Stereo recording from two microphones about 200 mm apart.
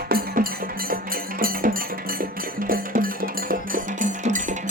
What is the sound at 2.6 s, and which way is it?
Music, 45° right (ahead or behind).